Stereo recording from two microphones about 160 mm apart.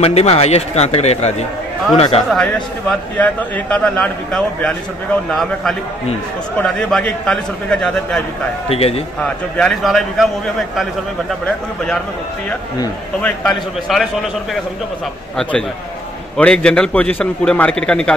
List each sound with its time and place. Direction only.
0.0 s speech: 40° left (ahead or behind)
2.3 s a man's voice: 5° left (ahead or behind)
8.6 s speech: 40° left (ahead or behind)
9.2 s a man's voice: 5° left (ahead or behind)
11.4 s a man's voice: 5° left (ahead or behind)
13.2 s a man's voice: 5° left (ahead or behind)
16.3 s a man's voice: 5° left (ahead or behind)